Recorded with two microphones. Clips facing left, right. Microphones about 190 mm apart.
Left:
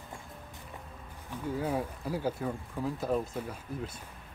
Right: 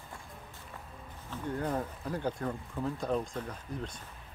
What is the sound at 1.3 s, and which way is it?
Speech, 5° left (ahead or behind).